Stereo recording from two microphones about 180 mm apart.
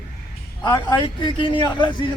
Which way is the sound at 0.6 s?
25° left (ahead or behind).